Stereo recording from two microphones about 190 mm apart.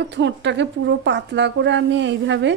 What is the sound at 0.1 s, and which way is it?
A woman's voice, 70° right (ahead or behind).